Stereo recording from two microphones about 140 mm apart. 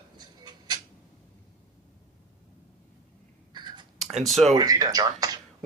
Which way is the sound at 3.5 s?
30° right (ahead or behind).